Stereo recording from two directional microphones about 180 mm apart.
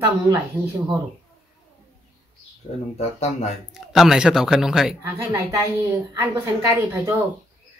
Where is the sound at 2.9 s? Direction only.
35° left (ahead or behind).